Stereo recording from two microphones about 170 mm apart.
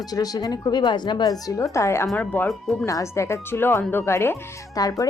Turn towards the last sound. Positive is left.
turn(degrees=20)  # may be behind; listen again after turning